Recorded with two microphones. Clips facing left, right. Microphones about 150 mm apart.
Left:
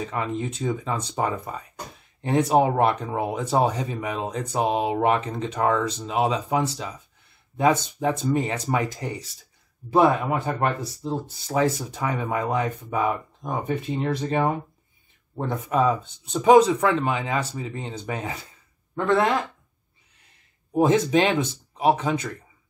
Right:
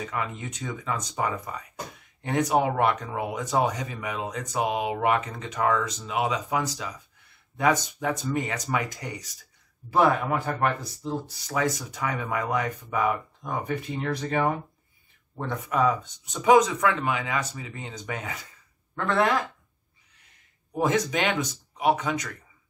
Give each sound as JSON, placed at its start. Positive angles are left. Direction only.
{"t": 0.0, "sound": "speech", "side_deg": 30}
{"t": 20.7, "sound": "speech", "side_deg": 25}